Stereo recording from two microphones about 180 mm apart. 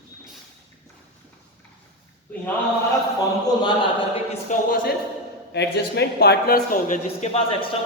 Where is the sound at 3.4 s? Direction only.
25° left (ahead or behind).